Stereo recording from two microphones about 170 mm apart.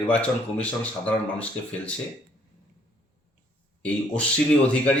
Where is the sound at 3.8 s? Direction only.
10° left (ahead or behind).